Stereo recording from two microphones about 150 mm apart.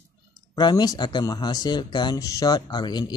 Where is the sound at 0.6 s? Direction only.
30° left (ahead or behind).